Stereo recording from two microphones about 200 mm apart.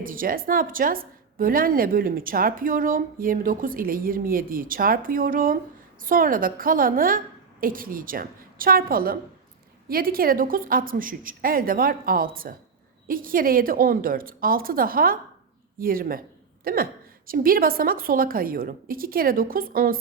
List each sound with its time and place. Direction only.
0.0 s a woman's voice: 45° right (ahead or behind)